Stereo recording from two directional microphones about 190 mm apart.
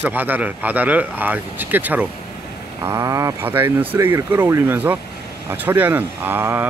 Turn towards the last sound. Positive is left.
turn(degrees=-10)  # may be behind; listen again after turning